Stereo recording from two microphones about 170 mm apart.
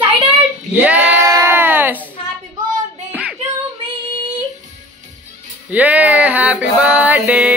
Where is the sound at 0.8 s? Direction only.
10° right (ahead or behind).